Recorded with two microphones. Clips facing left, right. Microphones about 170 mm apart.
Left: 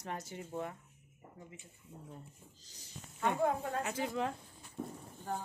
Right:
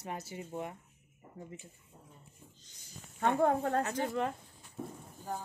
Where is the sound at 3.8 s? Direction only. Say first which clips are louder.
Right 3 dB; 10° left (ahead or behind).